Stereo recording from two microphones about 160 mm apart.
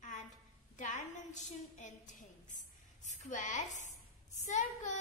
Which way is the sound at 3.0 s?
50° left (ahead or behind).